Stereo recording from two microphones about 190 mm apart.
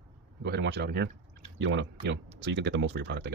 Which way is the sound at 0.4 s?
60° right (ahead or behind).